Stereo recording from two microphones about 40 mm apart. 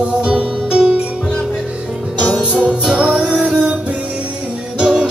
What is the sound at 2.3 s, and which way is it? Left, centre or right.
Music, right.